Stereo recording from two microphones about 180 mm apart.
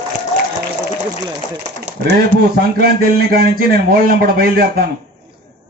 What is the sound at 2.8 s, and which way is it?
Speech, 55° right (ahead or behind).